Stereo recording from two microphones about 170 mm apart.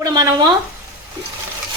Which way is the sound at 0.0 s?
20° right (ahead or behind).